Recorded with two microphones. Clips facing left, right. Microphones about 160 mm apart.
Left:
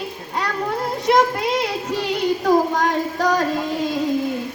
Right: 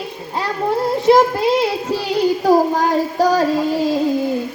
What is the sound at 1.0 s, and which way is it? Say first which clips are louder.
Child singing: right 5 dB; 30° right (ahead or behind).